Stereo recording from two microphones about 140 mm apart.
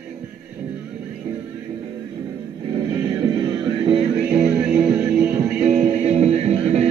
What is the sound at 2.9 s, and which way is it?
Music, 25° right (ahead or behind).